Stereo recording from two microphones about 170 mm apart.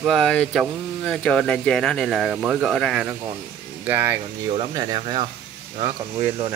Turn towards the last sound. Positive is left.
turn(degrees=-15)  # may be behind; listen again after turning